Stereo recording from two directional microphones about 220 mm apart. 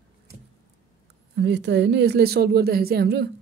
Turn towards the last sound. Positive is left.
turn(degrees=-45)  # may be behind; listen again after turning